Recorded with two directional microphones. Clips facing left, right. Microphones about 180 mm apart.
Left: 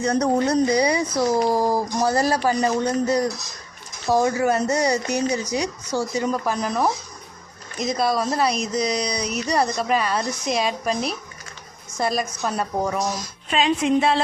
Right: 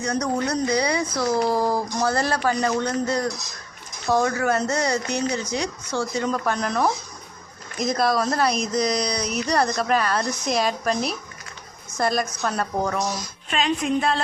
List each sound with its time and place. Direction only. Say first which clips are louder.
0.0 s speech: left 4 dB; 30° left (ahead or behind); by 13.1 s 10° left (ahead or behind)
13.5 s speech: left 3 dB; 25° left (ahead or behind)